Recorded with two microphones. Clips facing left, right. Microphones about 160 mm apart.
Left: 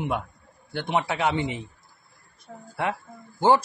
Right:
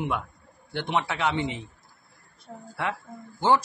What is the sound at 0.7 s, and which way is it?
Speech, 40° left (ahead or behind).